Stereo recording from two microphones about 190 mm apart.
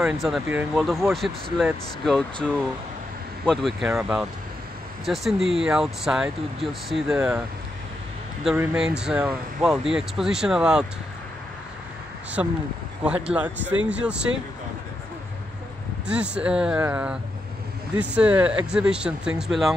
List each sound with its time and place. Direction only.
0.0 s speech: 5° right (ahead or behind)
8.5 s speech: 5° right (ahead or behind)
13.0 s speech: 5° right (ahead or behind)
16.1 s speech: 5° right (ahead or behind)